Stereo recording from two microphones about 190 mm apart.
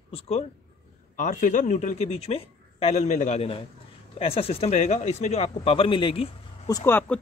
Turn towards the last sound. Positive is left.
turn(degrees=10)  # may be behind; listen again after turning